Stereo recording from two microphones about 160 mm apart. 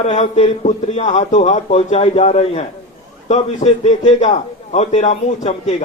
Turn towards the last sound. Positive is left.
turn(degrees=45)  # may be behind; listen again after turning